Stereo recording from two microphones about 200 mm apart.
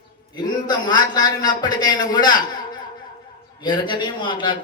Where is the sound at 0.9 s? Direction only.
20° left (ahead or behind).